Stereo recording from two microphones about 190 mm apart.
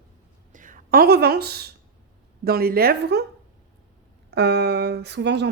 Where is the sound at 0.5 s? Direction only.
45° right (ahead or behind).